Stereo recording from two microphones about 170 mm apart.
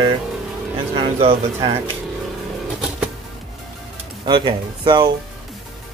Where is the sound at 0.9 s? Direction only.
30° right (ahead or behind).